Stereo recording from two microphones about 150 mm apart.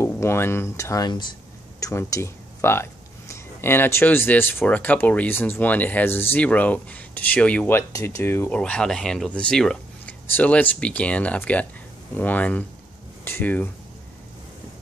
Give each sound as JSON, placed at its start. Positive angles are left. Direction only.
{"t": 0.0, "sound": "speech", "side_deg": 15}